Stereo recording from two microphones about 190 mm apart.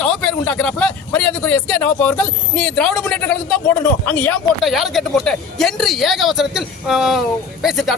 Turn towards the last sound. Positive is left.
turn(degrees=0)  # may be behind; listen again after turning